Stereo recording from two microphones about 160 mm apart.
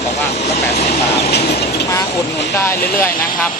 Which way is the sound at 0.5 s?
80° left.